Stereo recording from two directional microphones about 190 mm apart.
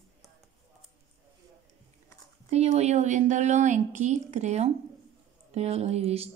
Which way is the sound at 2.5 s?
35° right (ahead or behind).